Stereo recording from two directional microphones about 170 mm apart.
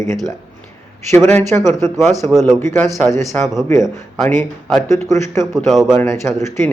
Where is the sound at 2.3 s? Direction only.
Centre (ahead or behind).